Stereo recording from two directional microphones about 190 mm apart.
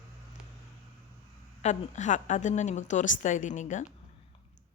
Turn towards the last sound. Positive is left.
turn(degrees=40)  # may be behind; listen again after turning